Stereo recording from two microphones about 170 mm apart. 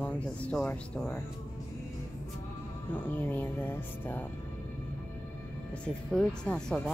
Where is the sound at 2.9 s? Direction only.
10° left (ahead or behind).